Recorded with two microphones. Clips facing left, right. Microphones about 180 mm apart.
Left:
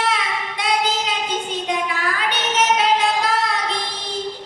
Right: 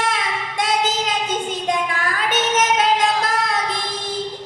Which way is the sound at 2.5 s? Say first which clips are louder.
Left 1 dB; 45° right (ahead or behind).